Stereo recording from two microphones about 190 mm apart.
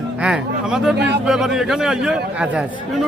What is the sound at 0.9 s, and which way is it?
Speech, 65° right (ahead or behind).